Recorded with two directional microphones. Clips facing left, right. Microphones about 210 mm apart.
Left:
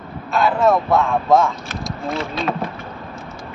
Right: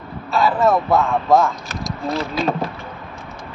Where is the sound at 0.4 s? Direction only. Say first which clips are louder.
Even; centre (ahead or behind).